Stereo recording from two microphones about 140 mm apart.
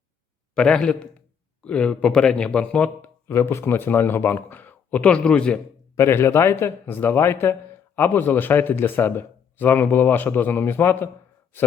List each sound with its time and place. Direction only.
0.5 s speech: 5° left (ahead or behind)
6.0 s speech: 20° left (ahead or behind)